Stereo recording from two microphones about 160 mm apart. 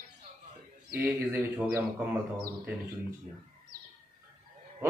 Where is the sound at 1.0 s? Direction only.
10° right (ahead or behind).